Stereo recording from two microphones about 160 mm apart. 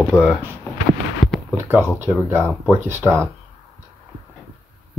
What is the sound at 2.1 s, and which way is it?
Speech, centre (ahead or behind).